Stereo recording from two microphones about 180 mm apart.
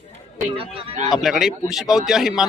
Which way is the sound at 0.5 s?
30° right (ahead or behind).